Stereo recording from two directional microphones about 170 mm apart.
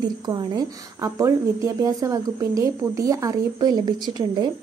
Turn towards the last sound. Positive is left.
turn(degrees=-25)  # may be behind; listen again after turning